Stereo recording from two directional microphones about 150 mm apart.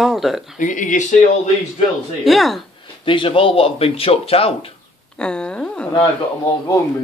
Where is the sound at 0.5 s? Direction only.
60° left (ahead or behind).